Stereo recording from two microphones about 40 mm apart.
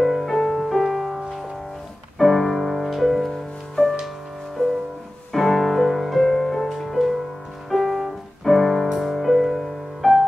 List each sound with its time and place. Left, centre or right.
0.0 s music: centre
0.8 s music: centre
2.1 s music: centre
5.3 s music: centre